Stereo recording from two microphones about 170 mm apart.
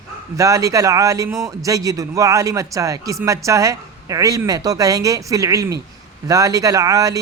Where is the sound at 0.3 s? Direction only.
20° right (ahead or behind).